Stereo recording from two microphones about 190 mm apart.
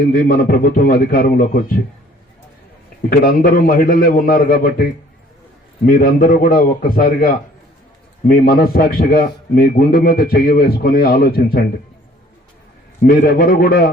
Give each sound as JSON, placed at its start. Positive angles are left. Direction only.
{"t": 0.1, "sound": "a man's voice", "side_deg": 50}
{"t": 3.1, "sound": "a man's voice", "side_deg": 50}
{"t": 13.0, "sound": "a man's voice", "side_deg": 50}